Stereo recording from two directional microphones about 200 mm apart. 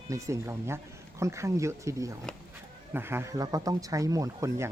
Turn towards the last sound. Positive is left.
turn(degrees=-15)  # may be behind; listen again after turning